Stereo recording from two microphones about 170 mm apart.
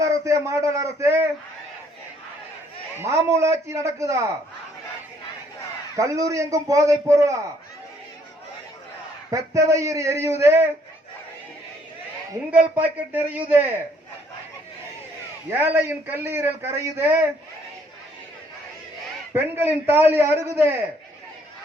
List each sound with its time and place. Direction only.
0.0 s a man's voice: 20° right (ahead or behind)
3.0 s a man's voice: 15° right (ahead or behind)
6.0 s a man's voice: 20° right (ahead or behind)
9.3 s a man's voice: 20° right (ahead or behind)
12.8 s a man's voice: 10° right (ahead or behind)
15.5 s a man's voice: 10° right (ahead or behind)
19.3 s a man's voice: 15° right (ahead or behind)